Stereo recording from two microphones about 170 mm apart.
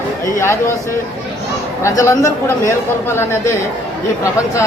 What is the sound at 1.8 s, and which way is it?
A man's voice, 20° left (ahead or behind).